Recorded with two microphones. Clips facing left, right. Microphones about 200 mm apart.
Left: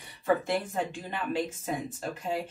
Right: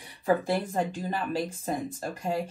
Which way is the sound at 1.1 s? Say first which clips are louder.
Right 1 dB; 35° right (ahead or behind).